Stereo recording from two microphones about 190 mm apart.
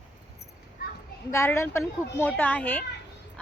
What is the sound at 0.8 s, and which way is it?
Children playing, 55° left (ahead or behind).